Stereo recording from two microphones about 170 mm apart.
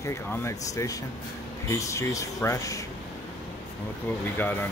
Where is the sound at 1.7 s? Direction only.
20° left (ahead or behind).